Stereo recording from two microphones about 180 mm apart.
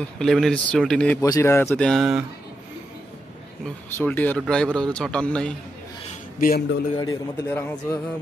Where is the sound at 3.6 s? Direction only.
10° left (ahead or behind).